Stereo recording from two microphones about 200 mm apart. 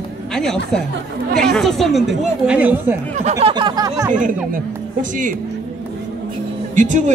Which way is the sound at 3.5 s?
20° right (ahead or behind).